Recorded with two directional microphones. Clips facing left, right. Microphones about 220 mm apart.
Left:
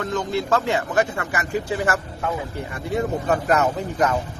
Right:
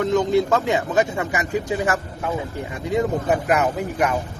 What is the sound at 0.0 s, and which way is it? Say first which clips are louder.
Speech: right 6 dB; 15° right (ahead or behind).